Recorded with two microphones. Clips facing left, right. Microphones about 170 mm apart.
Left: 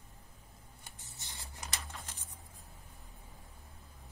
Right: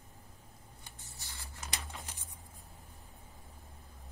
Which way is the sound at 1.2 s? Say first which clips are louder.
Left 1 dB; 20° left (ahead or behind).